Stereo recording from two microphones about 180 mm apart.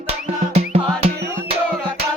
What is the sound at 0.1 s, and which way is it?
Music, 35° right (ahead or behind).